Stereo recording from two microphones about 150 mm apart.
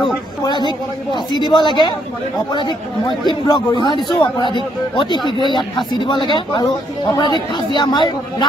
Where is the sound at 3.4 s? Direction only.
30° left (ahead or behind).